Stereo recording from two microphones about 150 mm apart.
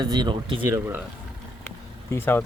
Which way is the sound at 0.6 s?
15° right (ahead or behind).